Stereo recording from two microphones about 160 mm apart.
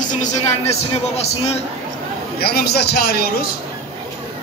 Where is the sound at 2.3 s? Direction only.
75° left (ahead or behind).